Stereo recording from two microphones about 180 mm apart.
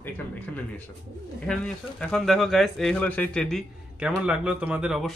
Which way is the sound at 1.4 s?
5° left (ahead or behind).